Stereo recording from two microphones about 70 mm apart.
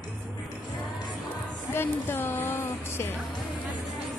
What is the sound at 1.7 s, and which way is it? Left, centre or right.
Speech, left.